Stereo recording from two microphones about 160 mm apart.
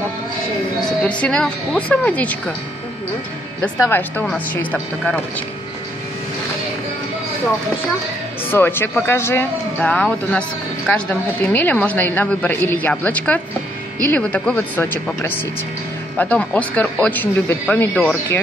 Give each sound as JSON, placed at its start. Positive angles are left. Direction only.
{"t": 0.8, "sound": "a woman's voice", "side_deg": 5}
{"t": 3.7, "sound": "speech", "side_deg": 20}
{"t": 4.2, "sound": "a woman's voice", "side_deg": 10}
{"t": 8.5, "sound": "a woman's voice", "side_deg": 15}